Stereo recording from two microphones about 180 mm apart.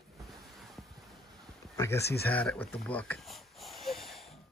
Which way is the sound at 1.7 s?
15° left (ahead or behind).